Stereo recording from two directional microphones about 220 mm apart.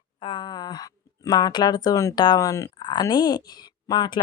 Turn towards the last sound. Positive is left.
turn(degrees=20)  # may be behind; listen again after turning